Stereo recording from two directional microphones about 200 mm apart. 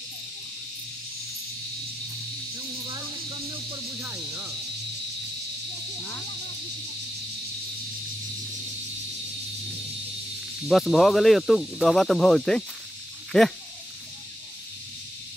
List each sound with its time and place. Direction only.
2.5 s snake: 25° right (ahead or behind)
10.7 s speech: centre (ahead or behind)